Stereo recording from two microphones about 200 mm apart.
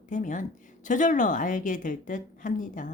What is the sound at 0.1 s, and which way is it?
A woman's voice, 40° left (ahead or behind).